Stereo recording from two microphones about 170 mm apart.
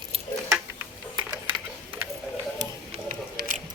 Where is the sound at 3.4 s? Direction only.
55° right (ahead or behind).